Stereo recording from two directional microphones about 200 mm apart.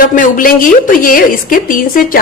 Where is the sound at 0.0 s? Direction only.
40° left (ahead or behind).